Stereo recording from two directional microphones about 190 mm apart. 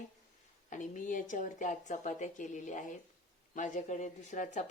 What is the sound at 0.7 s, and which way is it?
Speech, 40° left (ahead or behind).